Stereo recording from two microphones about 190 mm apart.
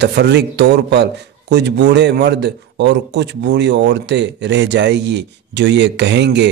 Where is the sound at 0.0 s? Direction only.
65° right (ahead or behind).